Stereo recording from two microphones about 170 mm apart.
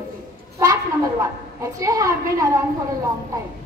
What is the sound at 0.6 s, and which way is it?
A woman's voice, 20° right (ahead or behind).